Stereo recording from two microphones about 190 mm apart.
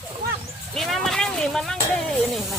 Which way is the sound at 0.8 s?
Centre (ahead or behind).